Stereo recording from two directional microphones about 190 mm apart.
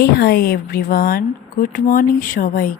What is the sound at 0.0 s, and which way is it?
Speech, 55° left (ahead or behind).